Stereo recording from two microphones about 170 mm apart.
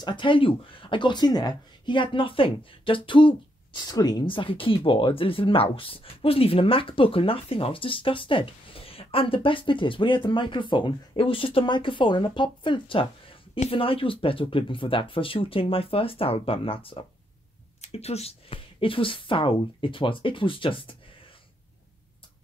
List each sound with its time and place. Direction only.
0.0 s speech: 30° left (ahead or behind)